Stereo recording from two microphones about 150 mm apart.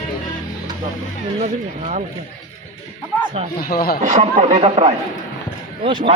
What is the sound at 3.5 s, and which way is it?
Speech, 75° left (ahead or behind).